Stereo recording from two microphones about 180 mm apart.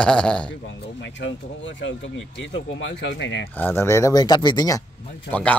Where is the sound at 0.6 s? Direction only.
85° left.